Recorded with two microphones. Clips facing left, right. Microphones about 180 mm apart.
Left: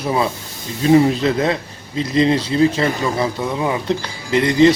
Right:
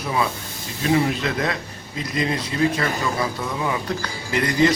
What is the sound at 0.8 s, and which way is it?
Speech, 30° left (ahead or behind).